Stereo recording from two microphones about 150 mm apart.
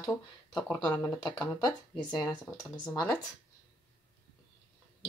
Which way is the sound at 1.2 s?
25° left (ahead or behind).